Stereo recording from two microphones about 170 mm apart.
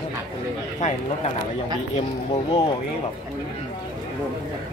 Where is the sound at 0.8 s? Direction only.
45° left (ahead or behind).